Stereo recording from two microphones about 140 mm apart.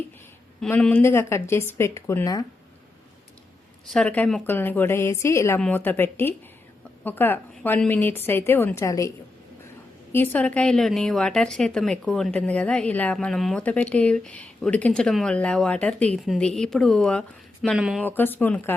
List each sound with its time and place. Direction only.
0.7 s a woman's voice: 10° left (ahead or behind)
3.8 s a woman's voice: 5° left (ahead or behind)
5.5 s a woman's voice: 10° left (ahead or behind)
17.7 s speech: 5° right (ahead or behind)
18.0 s a woman's voice: 15° left (ahead or behind)